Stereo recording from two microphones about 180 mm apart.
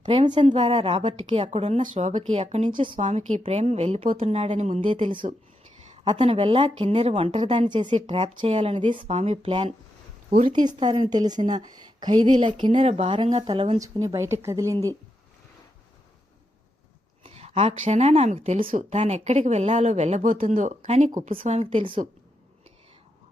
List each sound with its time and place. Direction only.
0.3 s a woman's voice: 30° right (ahead or behind)
2.9 s a woman's voice: 40° right (ahead or behind)
5.9 s a woman's voice: 30° right (ahead or behind)
9.5 s a woman's voice: 25° right (ahead or behind)
13.8 s speech: 20° right (ahead or behind)
17.2 s a woman's voice: 35° right (ahead or behind)